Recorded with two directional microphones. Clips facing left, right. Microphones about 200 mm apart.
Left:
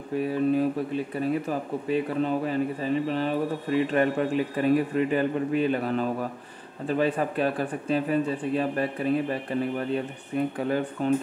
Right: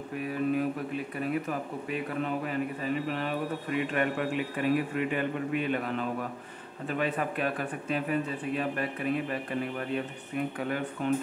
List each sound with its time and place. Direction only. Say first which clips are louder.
0.2 s speech: left 5 dB; 30° left (ahead or behind)